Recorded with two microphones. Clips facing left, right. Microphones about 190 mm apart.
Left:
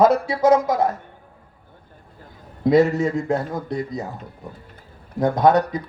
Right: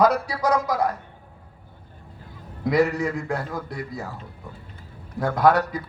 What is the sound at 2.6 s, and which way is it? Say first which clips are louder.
Speech: left 5 dB; 25° left (ahead or behind).